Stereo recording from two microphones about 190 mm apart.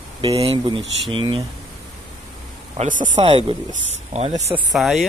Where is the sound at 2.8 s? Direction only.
40° right (ahead or behind).